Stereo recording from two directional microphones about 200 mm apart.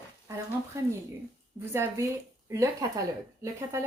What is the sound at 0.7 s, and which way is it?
Speech, 15° right (ahead or behind).